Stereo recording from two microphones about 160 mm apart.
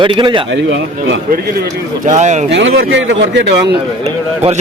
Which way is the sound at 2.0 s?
50° right (ahead or behind).